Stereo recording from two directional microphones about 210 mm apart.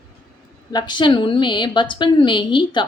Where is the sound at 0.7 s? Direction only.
20° left (ahead or behind).